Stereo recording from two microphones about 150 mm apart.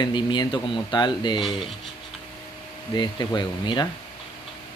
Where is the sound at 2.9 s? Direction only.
30° left (ahead or behind).